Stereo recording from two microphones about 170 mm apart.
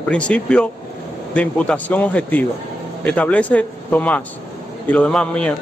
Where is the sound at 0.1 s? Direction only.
5° left (ahead or behind).